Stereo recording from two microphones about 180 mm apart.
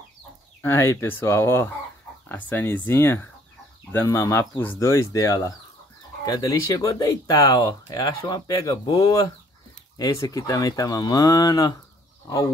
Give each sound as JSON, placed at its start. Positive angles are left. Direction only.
{"t": 0.6, "sound": "speech", "side_deg": 15}